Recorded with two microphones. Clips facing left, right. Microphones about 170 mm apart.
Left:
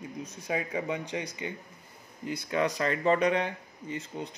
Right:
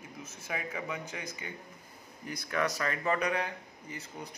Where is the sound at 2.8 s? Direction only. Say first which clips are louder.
Left 6 dB; 30° left (ahead or behind).